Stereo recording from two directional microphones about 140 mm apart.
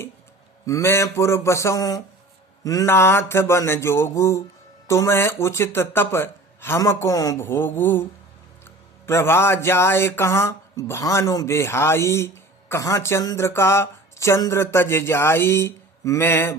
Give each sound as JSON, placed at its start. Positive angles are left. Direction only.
{"t": 0.6, "sound": "speech", "side_deg": 20}
{"t": 9.0, "sound": "speech", "side_deg": 20}